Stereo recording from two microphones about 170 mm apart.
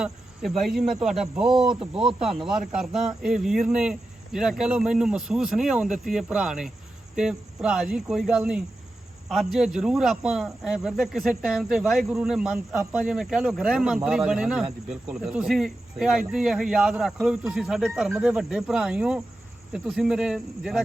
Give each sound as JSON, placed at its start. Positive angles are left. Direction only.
{"t": 0.0, "sound": "a man's voice", "side_deg": 0}